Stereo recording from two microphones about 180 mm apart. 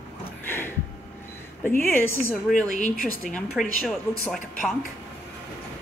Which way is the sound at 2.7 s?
45° left (ahead or behind).